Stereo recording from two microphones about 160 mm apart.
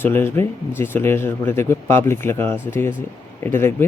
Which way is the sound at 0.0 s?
15° left (ahead or behind).